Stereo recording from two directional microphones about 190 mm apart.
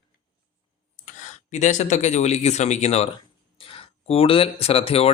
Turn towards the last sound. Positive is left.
turn(degrees=30)  # may be behind; listen again after turning